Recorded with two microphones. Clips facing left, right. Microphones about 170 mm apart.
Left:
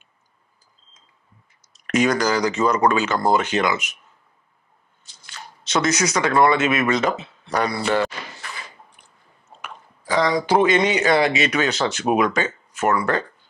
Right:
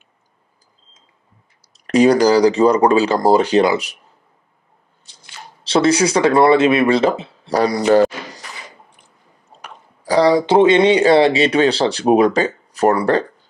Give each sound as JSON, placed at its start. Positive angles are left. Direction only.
{"t": 1.7, "sound": "speech", "side_deg": -35}
{"t": 5.6, "sound": "speech", "side_deg": -30}
{"t": 9.6, "sound": "speech", "side_deg": -35}